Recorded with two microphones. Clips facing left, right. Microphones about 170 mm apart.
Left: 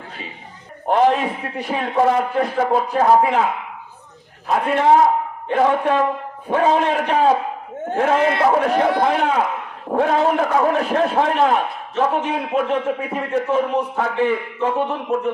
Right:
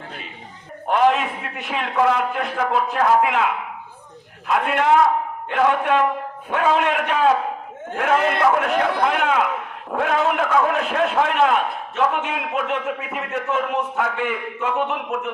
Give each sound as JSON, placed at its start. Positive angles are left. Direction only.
{"t": 0.9, "sound": "a man's voice", "side_deg": 35}